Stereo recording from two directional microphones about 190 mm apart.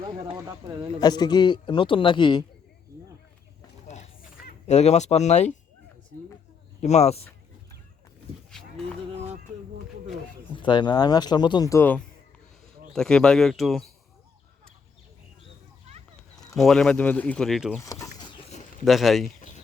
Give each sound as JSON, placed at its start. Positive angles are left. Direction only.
{"t": 0.0, "sound": "speech", "side_deg": -25}
{"t": 0.9, "sound": "speech", "side_deg": 20}
{"t": 3.8, "sound": "a sound", "side_deg": 35}
{"t": 4.6, "sound": "speech", "side_deg": 35}
{"t": 6.8, "sound": "speech", "side_deg": 35}
{"t": 9.1, "sound": "a sound", "side_deg": -35}
{"t": 10.5, "sound": "speech", "side_deg": 25}
{"t": 16.6, "sound": "speech", "side_deg": 0}
{"t": 17.8, "sound": "a sound", "side_deg": 15}
{"t": 18.9, "sound": "speech", "side_deg": 0}